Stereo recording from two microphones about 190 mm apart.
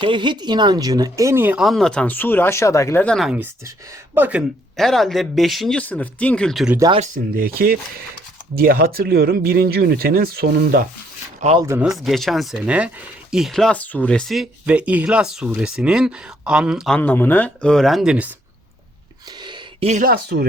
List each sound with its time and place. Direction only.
0.0 s speech: 25° right (ahead or behind); by 6.7 s centre (ahead or behind)
6.7 s speech: 20° right (ahead or behind)
7.0 s speech: 45° right (ahead or behind)
11.3 s speech: 35° right (ahead or behind)
11.6 s speech: 15° right (ahead or behind)
11.9 s speech: centre (ahead or behind)
19.4 s a sound: 25° right (ahead or behind)
19.9 s speech: 45° right (ahead or behind)